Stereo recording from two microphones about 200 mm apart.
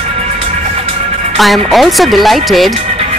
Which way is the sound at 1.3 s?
Centre (ahead or behind).